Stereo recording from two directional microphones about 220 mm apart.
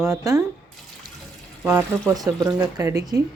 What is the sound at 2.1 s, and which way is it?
A woman's voice, 15° right (ahead or behind).